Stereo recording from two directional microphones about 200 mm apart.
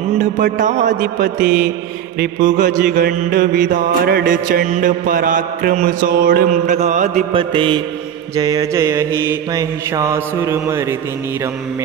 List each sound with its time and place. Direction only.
0.2 s mantra: 40° right (ahead or behind); by 11.0 s 15° right (ahead or behind)